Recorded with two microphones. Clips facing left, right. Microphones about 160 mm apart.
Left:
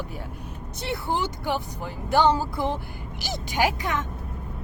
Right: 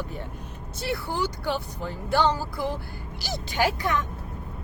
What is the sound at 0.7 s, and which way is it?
A woman's voice, 20° left (ahead or behind).